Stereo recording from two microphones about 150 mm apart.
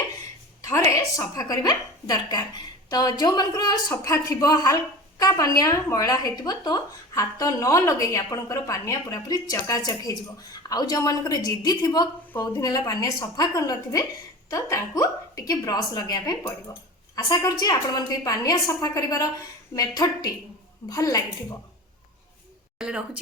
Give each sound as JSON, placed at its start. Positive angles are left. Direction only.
{"t": 0.6, "sound": "a woman's voice", "side_deg": 20}